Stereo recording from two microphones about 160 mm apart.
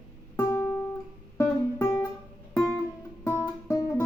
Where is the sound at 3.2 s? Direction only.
20° left (ahead or behind).